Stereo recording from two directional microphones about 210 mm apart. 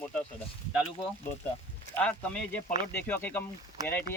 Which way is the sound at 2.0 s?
5° left (ahead or behind).